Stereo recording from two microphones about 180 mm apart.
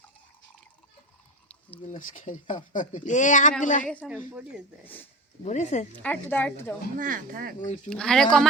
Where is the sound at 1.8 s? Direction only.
45° left (ahead or behind).